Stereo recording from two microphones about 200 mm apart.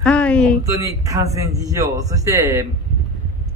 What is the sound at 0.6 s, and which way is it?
A man's voice, 15° right (ahead or behind).